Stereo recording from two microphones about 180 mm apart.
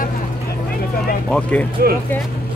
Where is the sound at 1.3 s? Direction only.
5° left (ahead or behind).